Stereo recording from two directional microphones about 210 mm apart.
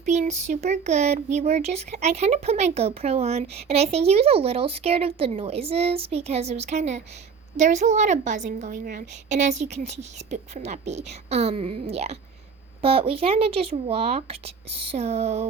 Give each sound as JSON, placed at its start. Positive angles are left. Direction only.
{"t": 0.0, "sound": "a woman's voice", "side_deg": -35}